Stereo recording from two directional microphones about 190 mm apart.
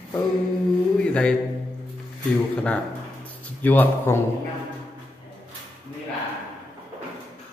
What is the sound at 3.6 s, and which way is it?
Speech, 10° left (ahead or behind).